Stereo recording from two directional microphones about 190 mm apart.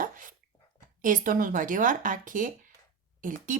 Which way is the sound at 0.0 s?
45° right (ahead or behind).